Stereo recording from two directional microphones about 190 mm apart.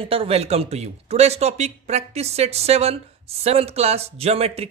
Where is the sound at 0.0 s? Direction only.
30° right (ahead or behind).